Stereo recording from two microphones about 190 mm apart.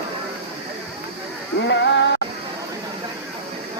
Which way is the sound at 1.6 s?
70° left (ahead or behind).